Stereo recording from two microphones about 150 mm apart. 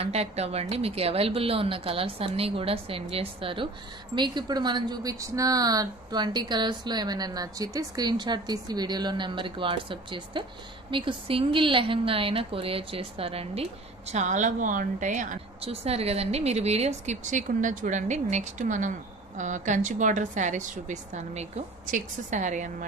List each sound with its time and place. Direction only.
0.0 s a woman's voice: 45° right (ahead or behind)
14.1 s a woman's voice: 55° right (ahead or behind)